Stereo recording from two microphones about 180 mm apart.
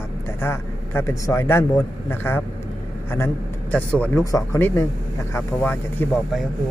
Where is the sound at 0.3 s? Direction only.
15° left (ahead or behind).